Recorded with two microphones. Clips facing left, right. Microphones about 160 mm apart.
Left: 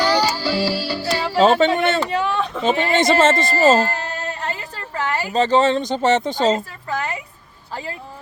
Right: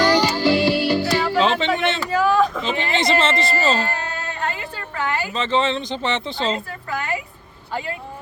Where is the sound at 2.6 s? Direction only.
45° left (ahead or behind).